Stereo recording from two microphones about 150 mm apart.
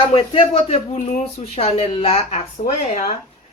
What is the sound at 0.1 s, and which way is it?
Speech, 40° left (ahead or behind).